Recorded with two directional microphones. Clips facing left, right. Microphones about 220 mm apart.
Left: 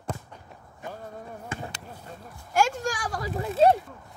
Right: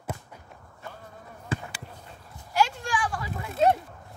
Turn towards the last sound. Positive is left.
turn(degrees=35)  # may be behind; listen again after turning